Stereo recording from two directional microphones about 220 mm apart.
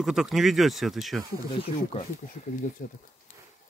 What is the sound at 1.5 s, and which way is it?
Speech, 25° left (ahead or behind).